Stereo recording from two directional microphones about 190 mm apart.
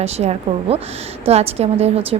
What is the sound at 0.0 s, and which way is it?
Speech, 35° right (ahead or behind).